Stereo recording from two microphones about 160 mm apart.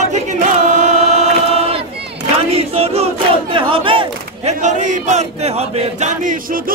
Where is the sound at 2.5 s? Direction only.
40° right (ahead or behind).